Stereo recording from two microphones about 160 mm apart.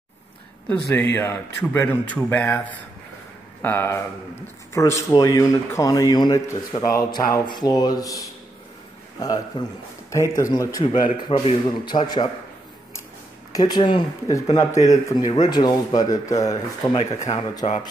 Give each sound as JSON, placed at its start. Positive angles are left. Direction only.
{"t": 0.7, "sound": "a man's voice", "side_deg": 15}
{"t": 3.6, "sound": "a man's voice", "side_deg": 15}
{"t": 9.2, "sound": "speech", "side_deg": 25}
{"t": 13.5, "sound": "speech", "side_deg": 25}
{"t": 17.6, "sound": "speech", "side_deg": 35}